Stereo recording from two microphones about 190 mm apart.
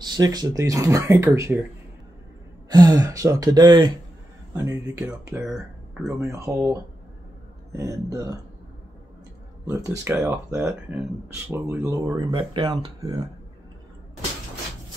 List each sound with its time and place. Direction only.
0.0 s speech: 20° right (ahead or behind)
2.7 s speech: 20° right (ahead or behind)
5.4 s speech: 5° right (ahead or behind)
6.0 s speech: 15° right (ahead or behind)
9.7 s speech: 15° right (ahead or behind)